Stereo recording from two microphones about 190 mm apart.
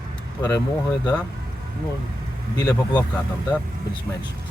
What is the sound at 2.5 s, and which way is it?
Speech, 20° left (ahead or behind).